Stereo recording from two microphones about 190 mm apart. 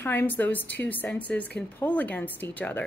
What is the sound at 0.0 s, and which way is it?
A woman's voice, 10° left (ahead or behind).